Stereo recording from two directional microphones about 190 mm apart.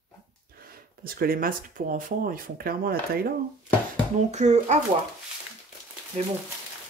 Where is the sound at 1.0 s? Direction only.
50° right (ahead or behind).